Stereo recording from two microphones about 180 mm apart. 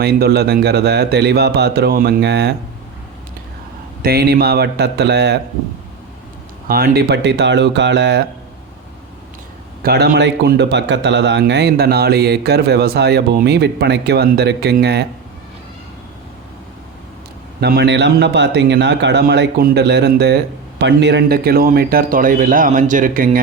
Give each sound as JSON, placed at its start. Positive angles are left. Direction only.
{"t": 0.0, "sound": "a man's voice", "side_deg": -60}
{"t": 4.0, "sound": "a man's voice", "side_deg": -60}
{"t": 6.7, "sound": "speech", "side_deg": -55}
{"t": 9.8, "sound": "a man's voice", "side_deg": -65}
{"t": 17.6, "sound": "a man's voice", "side_deg": -65}